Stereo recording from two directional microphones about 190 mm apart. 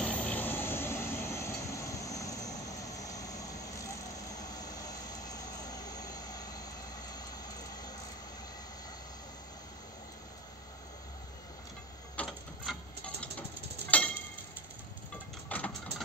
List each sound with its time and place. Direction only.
0.0 s vehicle: 5° left (ahead or behind)
12.2 s a sound: centre (ahead or behind)
13.8 s tick-tock: 5° left (ahead or behind)
15.4 s engine: 10° left (ahead or behind)